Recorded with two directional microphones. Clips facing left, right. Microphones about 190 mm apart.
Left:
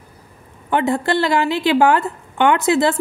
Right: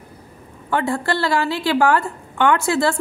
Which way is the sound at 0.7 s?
20° left (ahead or behind).